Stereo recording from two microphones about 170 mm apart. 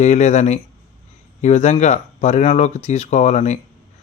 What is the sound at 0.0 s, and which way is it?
A man's voice, 40° left (ahead or behind).